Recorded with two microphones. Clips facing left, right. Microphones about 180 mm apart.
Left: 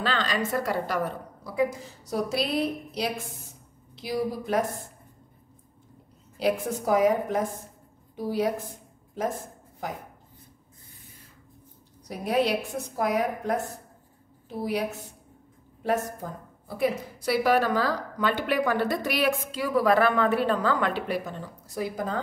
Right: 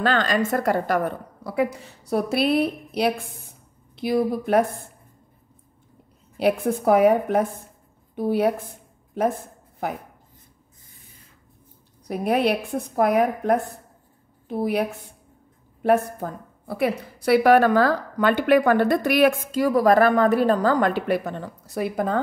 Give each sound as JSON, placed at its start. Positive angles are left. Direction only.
{"t": 0.0, "sound": "a woman's voice", "side_deg": -50}
{"t": 6.3, "sound": "a woman's voice", "side_deg": -60}
{"t": 9.8, "sound": "a woman's voice", "side_deg": -60}
{"t": 12.1, "sound": "a woman's voice", "side_deg": -60}